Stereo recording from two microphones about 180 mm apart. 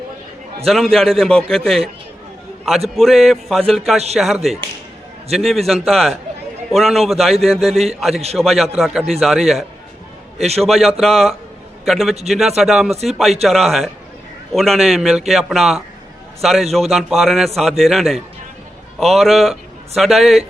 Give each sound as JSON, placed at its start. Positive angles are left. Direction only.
{"t": 0.6, "sound": "a man's voice", "side_deg": 0}
{"t": 2.9, "sound": "a man's voice", "side_deg": 0}
{"t": 10.3, "sound": "a man's voice", "side_deg": -35}
{"t": 10.6, "sound": "a man's voice", "side_deg": 0}